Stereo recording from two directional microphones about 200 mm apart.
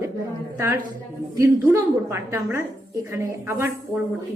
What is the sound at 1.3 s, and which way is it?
A woman's voice, 15° right (ahead or behind).